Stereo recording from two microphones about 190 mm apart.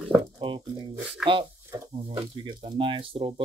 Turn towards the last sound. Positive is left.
turn(degrees=-25)  # may be behind; listen again after turning